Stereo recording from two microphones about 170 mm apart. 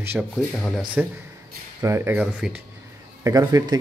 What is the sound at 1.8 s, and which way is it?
A man's voice, 15° right (ahead or behind).